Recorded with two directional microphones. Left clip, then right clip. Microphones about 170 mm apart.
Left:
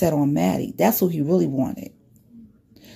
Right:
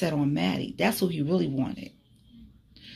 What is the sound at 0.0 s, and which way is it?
A woman's voice, 30° left (ahead or behind).